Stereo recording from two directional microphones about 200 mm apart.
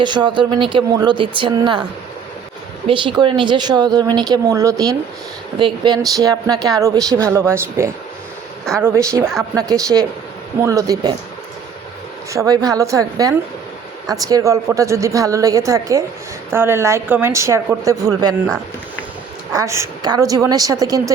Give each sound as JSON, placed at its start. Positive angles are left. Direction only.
{"t": 0.0, "sound": "speech", "side_deg": -25}
{"t": 2.8, "sound": "a woman's voice", "side_deg": -25}
{"t": 12.3, "sound": "a woman's voice", "side_deg": -15}
{"t": 19.5, "sound": "a woman's voice", "side_deg": -15}